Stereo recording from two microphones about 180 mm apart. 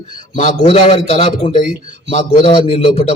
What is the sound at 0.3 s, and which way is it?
A man's voice, 35° left (ahead or behind).